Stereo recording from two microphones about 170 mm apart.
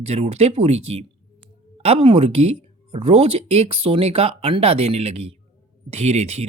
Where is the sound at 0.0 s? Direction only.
35° right (ahead or behind).